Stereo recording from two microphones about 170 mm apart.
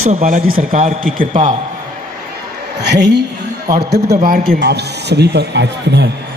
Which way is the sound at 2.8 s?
80° right.